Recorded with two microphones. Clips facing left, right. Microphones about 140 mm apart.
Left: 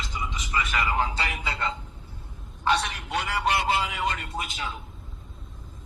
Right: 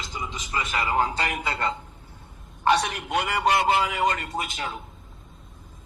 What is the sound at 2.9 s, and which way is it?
Speech, 55° right (ahead or behind).